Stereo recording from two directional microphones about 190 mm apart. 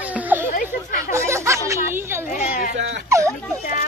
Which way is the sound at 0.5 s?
45° left (ahead or behind).